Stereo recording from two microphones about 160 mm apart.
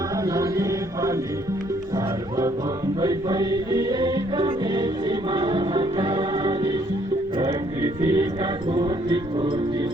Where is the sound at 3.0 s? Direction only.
25° right (ahead or behind).